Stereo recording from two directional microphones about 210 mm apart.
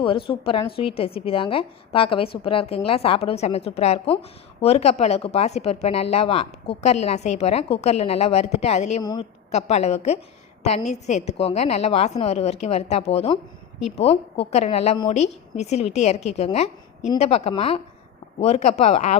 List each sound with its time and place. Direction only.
0.0 s a woman's voice: 25° left (ahead or behind)